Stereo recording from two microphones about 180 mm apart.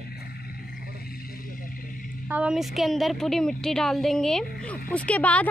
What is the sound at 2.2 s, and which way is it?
A woman's voice, 5° right (ahead or behind).